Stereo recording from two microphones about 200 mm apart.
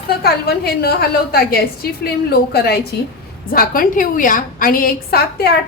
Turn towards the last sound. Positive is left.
turn(degrees=55)  # may be behind; listen again after turning